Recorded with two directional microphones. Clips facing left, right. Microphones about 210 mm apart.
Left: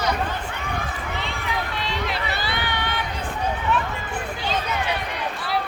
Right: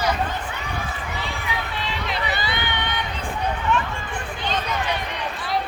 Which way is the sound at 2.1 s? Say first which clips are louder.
Right 1 dB; centre (ahead or behind).